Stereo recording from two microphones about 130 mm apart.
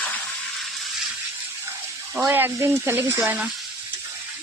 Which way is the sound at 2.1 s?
20° right (ahead or behind).